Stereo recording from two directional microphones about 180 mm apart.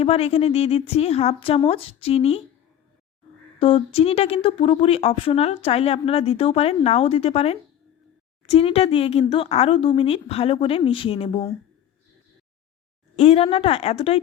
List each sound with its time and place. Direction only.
0.0 s speech: 35° left (ahead or behind)
3.6 s speech: 30° left (ahead or behind)
13.1 s speech: 30° left (ahead or behind)